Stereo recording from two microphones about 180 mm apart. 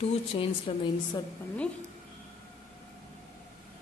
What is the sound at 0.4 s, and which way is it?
Speech, 30° left (ahead or behind).